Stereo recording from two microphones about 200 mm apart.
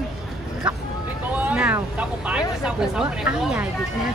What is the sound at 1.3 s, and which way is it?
Vehicle, 5° right (ahead or behind).